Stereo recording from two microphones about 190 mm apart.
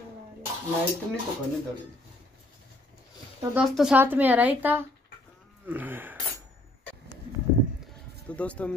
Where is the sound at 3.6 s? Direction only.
Centre (ahead or behind).